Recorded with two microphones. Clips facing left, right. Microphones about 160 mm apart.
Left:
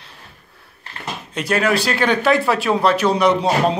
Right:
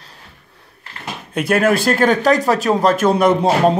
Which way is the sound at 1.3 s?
55° right (ahead or behind).